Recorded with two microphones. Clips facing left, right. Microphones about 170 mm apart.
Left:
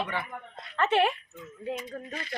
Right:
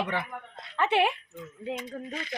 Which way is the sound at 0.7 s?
10° right (ahead or behind).